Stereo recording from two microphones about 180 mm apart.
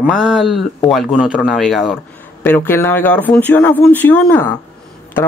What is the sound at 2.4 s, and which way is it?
Speech, 10° left (ahead or behind).